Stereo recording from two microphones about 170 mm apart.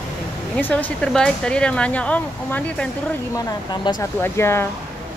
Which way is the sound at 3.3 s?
25° left (ahead or behind).